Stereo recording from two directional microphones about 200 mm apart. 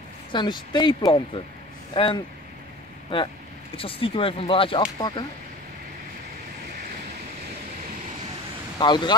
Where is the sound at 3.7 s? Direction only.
25° left (ahead or behind).